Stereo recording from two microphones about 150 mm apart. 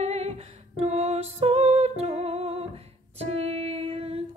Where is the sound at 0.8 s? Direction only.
45° right (ahead or behind).